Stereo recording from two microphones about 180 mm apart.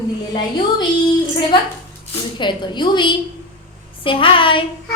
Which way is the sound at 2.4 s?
25° left (ahead or behind).